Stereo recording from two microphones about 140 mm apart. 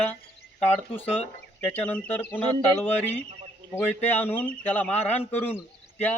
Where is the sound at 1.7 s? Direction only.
10° left (ahead or behind).